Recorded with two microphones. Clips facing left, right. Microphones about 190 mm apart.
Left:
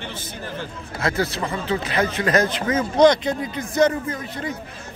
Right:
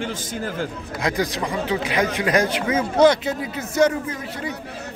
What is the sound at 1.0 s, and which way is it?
Speech, 15° right (ahead or behind).